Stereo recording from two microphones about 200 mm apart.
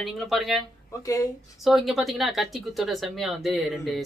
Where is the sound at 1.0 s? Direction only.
15° left (ahead or behind).